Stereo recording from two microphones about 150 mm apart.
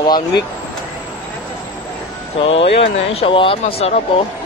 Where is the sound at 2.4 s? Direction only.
40° left (ahead or behind).